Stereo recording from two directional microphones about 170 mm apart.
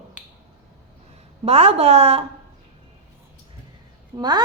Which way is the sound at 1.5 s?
35° right (ahead or behind).